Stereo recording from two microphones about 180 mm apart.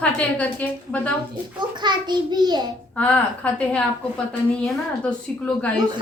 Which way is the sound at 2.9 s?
5° left (ahead or behind).